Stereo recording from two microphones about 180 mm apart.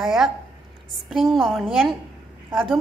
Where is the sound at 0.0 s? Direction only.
Centre (ahead or behind).